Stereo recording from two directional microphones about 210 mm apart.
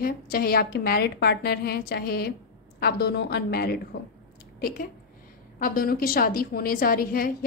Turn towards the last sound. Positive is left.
turn(degrees=45)  # may be behind; listen again after turning